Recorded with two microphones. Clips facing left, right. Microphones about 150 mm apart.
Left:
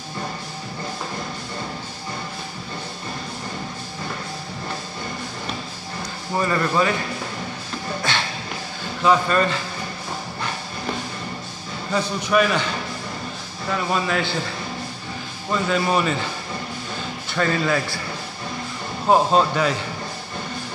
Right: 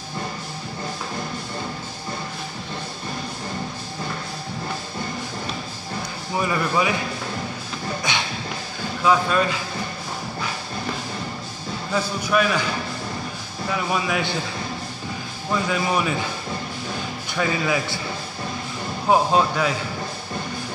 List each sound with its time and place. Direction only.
6.3 s speech: 10° right (ahead or behind)
9.0 s speech: centre (ahead or behind)
11.9 s speech: 5° right (ahead or behind)
13.7 s speech: 10° right (ahead or behind)
15.7 s speech: 5° right (ahead or behind)
17.3 s speech: 5° right (ahead or behind)
19.0 s speech: centre (ahead or behind)